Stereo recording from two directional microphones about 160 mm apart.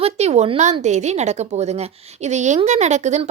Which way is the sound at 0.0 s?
40° right (ahead or behind).